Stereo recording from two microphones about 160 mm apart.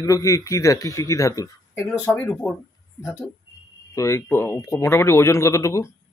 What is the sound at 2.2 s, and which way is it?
Speech, 10° left (ahead or behind).